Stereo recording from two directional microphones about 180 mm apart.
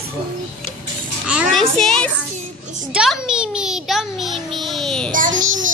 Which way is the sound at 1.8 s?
5° left (ahead or behind).